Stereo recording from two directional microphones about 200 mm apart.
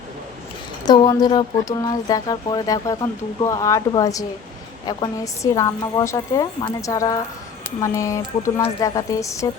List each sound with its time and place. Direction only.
0.9 s a woman's voice: 20° left (ahead or behind)